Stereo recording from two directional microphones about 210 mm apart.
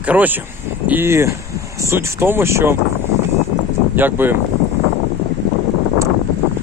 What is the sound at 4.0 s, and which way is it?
Speech, 10° right (ahead or behind).